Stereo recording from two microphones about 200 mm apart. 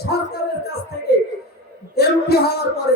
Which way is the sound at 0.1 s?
55° left (ahead or behind).